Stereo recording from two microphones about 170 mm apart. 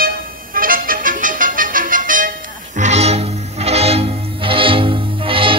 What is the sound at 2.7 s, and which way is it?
Music, 40° right (ahead or behind).